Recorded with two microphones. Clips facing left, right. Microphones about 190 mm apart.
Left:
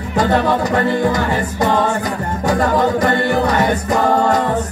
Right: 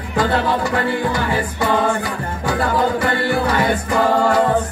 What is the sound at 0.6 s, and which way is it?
Music, 40° left (ahead or behind).